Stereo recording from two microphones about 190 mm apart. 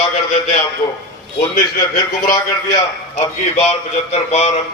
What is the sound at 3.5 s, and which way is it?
A man's voice, 35° left (ahead or behind).